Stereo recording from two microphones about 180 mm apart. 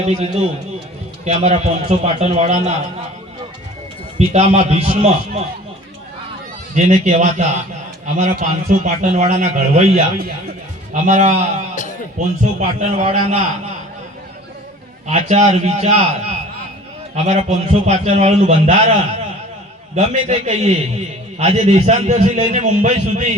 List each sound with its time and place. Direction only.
0.0 s a man's voice: 35° right (ahead or behind)
4.3 s a man's voice: 40° right (ahead or behind)
6.7 s a man's voice: 40° right (ahead or behind)
15.1 s a man's voice: 40° right (ahead or behind)
17.2 s a man's voice: 35° right (ahead or behind)
20.0 s a man's voice: 35° right (ahead or behind)